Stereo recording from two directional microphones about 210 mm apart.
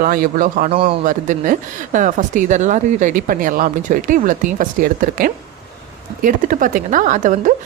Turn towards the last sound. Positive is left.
turn(degrees=-35)  # may be behind; listen again after turning